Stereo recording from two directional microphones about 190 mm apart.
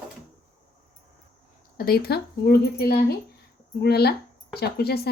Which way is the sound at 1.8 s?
55° left (ahead or behind).